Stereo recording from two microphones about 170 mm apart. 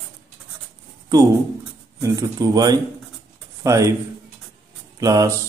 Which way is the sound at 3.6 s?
20° right (ahead or behind).